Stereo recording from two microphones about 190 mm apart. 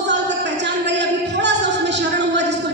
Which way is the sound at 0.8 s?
65° right (ahead or behind).